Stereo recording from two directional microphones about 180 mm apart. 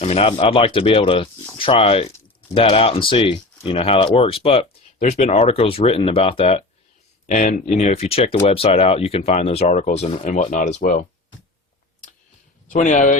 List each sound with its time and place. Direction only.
0.0 s speech: 35° left (ahead or behind)
7.3 s speech: 45° left (ahead or behind)
12.7 s speech: 45° left (ahead or behind)